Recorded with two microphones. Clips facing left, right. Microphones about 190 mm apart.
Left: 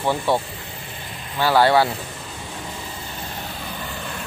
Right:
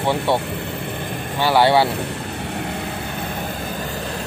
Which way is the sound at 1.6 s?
25° right (ahead or behind).